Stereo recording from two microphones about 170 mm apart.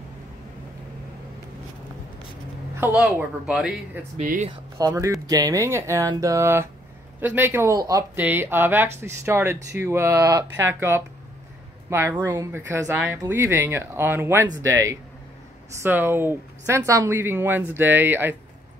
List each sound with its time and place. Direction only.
2.7 s a sound: 10° right (ahead or behind)
3.0 s speech: 5° right (ahead or behind)
4.2 s speech: 50° right (ahead or behind)
4.5 s speech: 20° right (ahead or behind); by 13.2 s 5° right (ahead or behind)
13.2 s speech: 15° right (ahead or behind)